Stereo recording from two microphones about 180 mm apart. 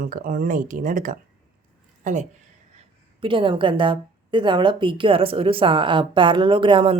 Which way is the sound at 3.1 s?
30° right (ahead or behind).